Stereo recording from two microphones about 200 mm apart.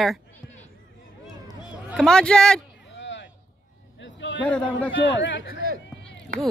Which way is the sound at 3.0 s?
65° left (ahead or behind).